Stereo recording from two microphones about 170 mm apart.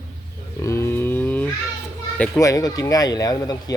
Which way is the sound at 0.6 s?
15° left (ahead or behind).